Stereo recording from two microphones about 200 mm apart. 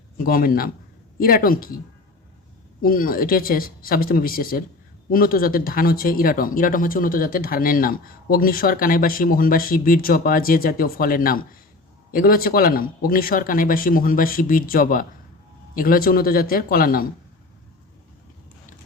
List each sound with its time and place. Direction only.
0.2 s speech: 45° left (ahead or behind)
2.8 s speech: 45° left (ahead or behind)